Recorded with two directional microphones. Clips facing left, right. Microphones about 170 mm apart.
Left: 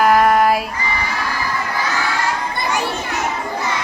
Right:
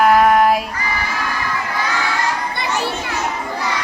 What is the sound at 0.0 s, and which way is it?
Child singing, centre (ahead or behind).